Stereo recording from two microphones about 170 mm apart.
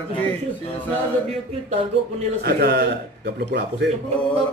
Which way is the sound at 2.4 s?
70° right (ahead or behind).